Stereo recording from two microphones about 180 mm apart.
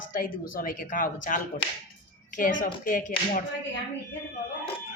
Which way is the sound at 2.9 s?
45° left (ahead or behind).